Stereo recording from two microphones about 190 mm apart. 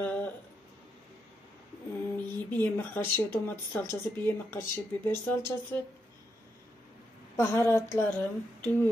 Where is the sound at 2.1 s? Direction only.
10° left (ahead or behind).